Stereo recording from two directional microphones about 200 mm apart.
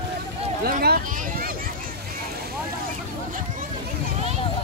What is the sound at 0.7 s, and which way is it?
Speech, 45° right (ahead or behind).